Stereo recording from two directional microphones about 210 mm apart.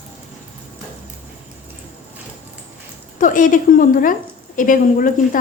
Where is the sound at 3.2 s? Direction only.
40° left (ahead or behind).